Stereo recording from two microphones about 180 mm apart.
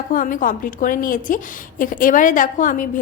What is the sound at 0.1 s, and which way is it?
A woman's voice, 50° left (ahead or behind).